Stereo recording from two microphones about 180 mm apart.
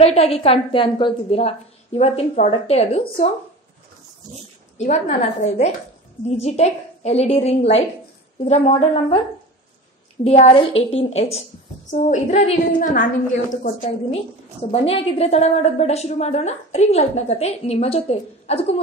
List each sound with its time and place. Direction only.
0.0 s a woman's voice: 35° left (ahead or behind)
4.7 s a woman's voice: 40° left (ahead or behind)
10.2 s a woman's voice: 35° left (ahead or behind)
13.8 s a woman's voice: 35° left (ahead or behind)